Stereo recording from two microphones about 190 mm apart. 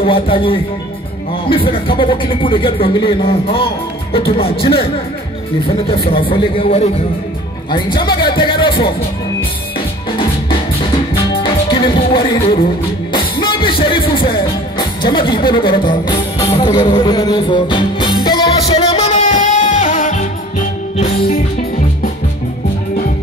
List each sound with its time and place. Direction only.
0.0 s speech: 25° left (ahead or behind)
5.9 s speech: 30° left (ahead or behind)
11.7 s speech: 25° left (ahead or behind)
13.1 s music: 25° left (ahead or behind); by 20.2 s 40° left (ahead or behind)